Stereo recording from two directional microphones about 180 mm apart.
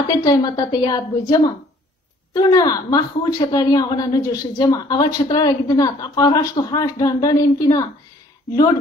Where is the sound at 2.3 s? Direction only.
20° left (ahead or behind).